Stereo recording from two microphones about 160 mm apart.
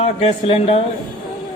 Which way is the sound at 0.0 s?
40° left (ahead or behind).